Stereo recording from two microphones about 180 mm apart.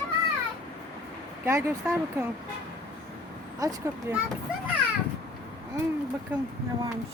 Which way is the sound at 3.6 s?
20° right (ahead or behind).